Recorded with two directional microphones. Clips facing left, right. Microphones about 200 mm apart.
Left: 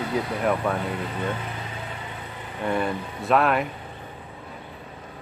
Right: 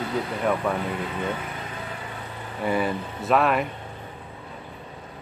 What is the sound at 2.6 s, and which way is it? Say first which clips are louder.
Speech: right 1 dB; 5° right (ahead or behind).